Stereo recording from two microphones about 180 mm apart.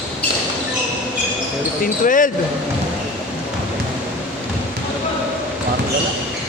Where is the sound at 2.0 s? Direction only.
45° left (ahead or behind).